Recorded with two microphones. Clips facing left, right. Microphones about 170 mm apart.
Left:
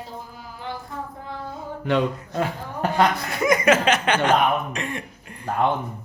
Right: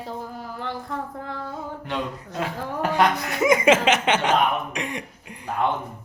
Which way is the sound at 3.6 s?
20° right (ahead or behind).